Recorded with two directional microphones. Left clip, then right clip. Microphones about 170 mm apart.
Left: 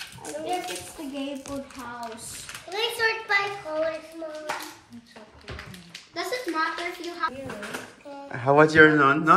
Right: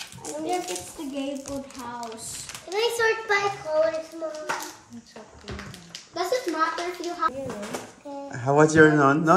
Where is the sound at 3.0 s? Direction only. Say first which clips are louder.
Even; 45° right (ahead or behind).